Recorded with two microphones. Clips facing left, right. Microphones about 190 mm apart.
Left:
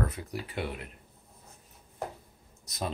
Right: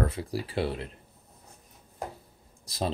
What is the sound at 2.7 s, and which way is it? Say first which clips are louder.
Speech: right 6 dB; 30° right (ahead or behind).